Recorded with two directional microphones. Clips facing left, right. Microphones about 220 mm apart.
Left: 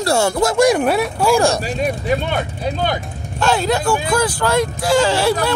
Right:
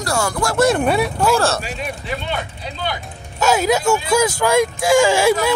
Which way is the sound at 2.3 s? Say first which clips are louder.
Left 5 dB; 50° left (ahead or behind).